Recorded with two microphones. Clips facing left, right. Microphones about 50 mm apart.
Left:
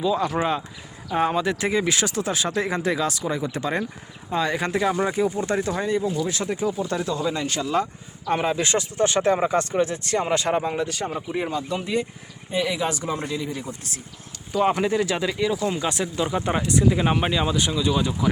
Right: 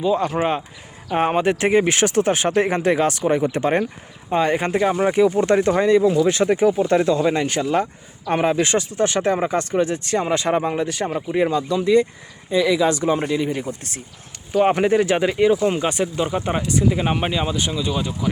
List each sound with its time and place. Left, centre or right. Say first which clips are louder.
0.4 s speech: right 3 dB; centre
1.1 s speech: right 4 dB; right
4.8 s speech: right 1 dB; centre
5.1 s speech: right 7 dB; right
6.2 s speech: right 9 dB; right
7.4 s speech: right 4 dB; right
11.3 s speech: right 8 dB; right
13.2 s speech: right 7 dB; right
14.5 s speech: right 5 dB; right; by 18.3 s centre